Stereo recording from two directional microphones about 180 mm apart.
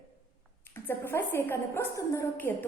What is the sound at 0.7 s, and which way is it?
A woman's voice, 10° left (ahead or behind).